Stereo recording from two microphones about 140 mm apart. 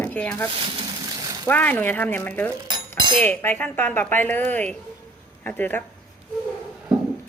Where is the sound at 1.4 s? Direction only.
10° left (ahead or behind).